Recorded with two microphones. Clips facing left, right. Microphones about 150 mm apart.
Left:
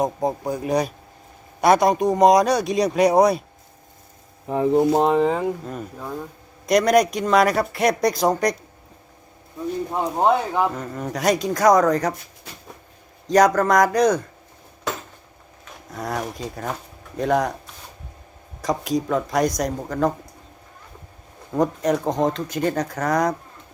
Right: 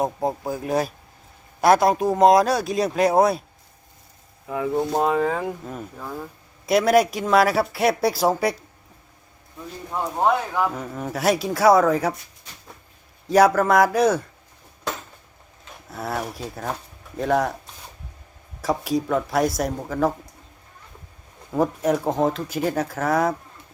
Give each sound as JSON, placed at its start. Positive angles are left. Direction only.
{"t": 0.0, "sound": "speech", "side_deg": -5}
{"t": 4.4, "sound": "speech", "side_deg": 35}
{"t": 5.0, "sound": "speech", "side_deg": 25}
{"t": 5.3, "sound": "speech", "side_deg": 0}
{"t": 10.0, "sound": "speech", "side_deg": 20}
{"t": 10.7, "sound": "speech", "side_deg": -5}
{"t": 13.2, "sound": "speech", "side_deg": -5}
{"t": 15.9, "sound": "speech", "side_deg": -5}
{"t": 18.6, "sound": "speech", "side_deg": -5}
{"t": 21.5, "sound": "speech", "side_deg": -5}